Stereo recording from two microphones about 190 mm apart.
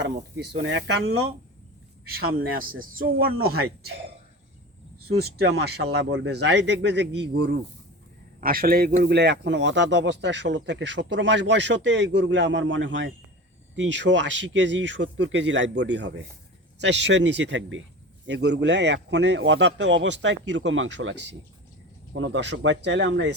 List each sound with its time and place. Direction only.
0.0 s speech: 65° right (ahead or behind)
2.6 s speech: 50° right (ahead or behind)
5.0 s speech: 55° right (ahead or behind)
8.4 s a man's voice: 50° right (ahead or behind); by 17.8 s 80° right
18.3 s a man's voice: 65° right (ahead or behind); by 21.2 s 90° right
22.1 s a man's voice: 80° right